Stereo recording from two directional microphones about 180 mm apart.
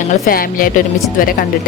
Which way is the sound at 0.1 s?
50° left (ahead or behind).